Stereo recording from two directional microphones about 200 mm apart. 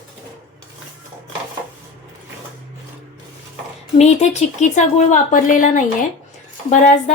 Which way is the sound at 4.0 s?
35° left (ahead or behind).